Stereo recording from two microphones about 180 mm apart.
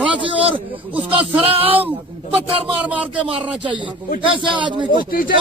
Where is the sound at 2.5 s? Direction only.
30° right (ahead or behind).